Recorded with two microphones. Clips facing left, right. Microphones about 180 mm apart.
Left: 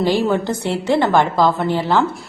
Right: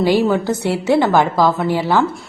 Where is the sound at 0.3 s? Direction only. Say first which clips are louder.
Right 2 dB; centre (ahead or behind).